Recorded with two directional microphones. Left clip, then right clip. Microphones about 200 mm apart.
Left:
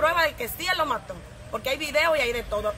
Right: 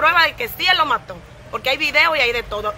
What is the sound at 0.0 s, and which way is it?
Speech, 5° left (ahead or behind).